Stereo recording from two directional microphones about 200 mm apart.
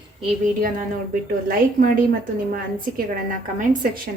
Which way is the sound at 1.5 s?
45° right (ahead or behind).